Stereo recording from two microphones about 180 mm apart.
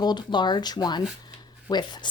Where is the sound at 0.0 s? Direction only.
25° left (ahead or behind).